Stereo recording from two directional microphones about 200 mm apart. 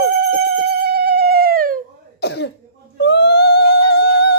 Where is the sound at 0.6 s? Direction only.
50° right (ahead or behind).